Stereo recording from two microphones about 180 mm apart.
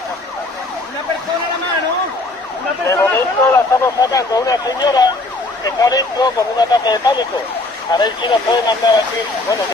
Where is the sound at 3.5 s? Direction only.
15° left (ahead or behind).